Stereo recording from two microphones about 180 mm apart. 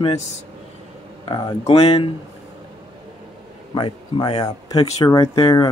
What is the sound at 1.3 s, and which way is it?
Speech, 25° left (ahead or behind).